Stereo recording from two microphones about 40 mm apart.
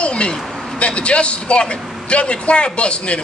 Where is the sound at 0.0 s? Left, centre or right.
Left.